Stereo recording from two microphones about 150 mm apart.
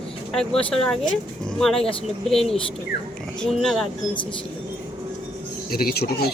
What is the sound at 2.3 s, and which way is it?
A child's voice, centre (ahead or behind).